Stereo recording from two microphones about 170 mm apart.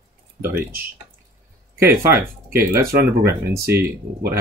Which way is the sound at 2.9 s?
65° right (ahead or behind).